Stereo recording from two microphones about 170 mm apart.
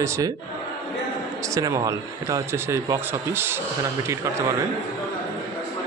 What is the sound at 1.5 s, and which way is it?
Speech, 20° right (ahead or behind).